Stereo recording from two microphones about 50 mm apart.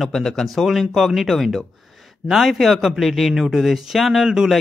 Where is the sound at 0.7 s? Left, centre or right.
Centre.